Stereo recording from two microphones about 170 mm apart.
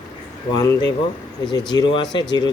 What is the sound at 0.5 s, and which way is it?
Speech, 20° left (ahead or behind).